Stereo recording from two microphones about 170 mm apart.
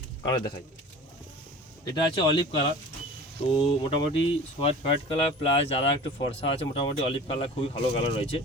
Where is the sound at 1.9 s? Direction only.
25° left (ahead or behind).